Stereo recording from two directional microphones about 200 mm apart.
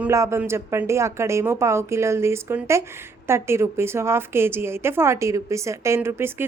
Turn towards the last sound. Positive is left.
turn(degrees=-10)  # may be behind; listen again after turning